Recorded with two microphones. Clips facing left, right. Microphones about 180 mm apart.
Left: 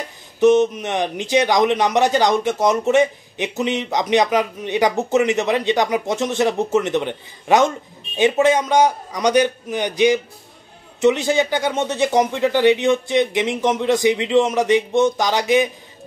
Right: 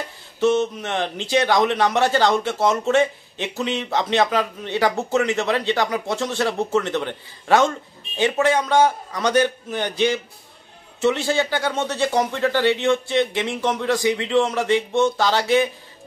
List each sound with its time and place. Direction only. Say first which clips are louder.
0.4 s a man's voice: left 5 dB; 20° left (ahead or behind)